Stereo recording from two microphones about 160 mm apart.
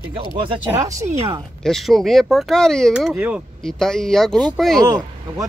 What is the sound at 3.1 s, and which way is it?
Speech, 10° right (ahead or behind).